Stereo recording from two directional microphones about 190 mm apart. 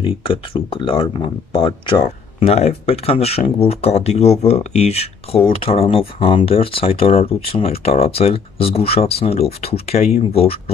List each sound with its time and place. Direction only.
0.0 s speech: 30° left (ahead or behind)